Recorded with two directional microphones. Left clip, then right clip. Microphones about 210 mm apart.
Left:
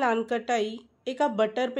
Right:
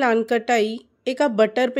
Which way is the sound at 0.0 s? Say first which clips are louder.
Right 6 dB; 40° right (ahead or behind).